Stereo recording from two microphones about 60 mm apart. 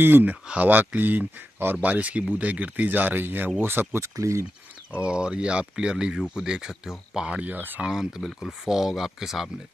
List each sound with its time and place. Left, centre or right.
0.0 s speech: right
3.9 s speech: right
5.0 s speech: centre
7.8 s speech: centre